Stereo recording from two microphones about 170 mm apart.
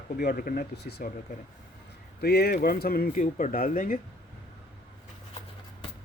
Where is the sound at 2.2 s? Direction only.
70° left (ahead or behind).